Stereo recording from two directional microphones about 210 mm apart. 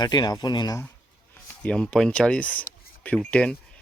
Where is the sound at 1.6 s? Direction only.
5° left (ahead or behind).